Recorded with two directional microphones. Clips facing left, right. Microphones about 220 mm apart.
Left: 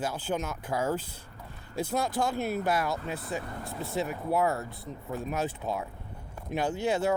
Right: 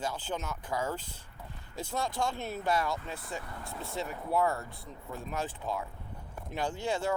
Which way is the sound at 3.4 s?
50° left (ahead or behind).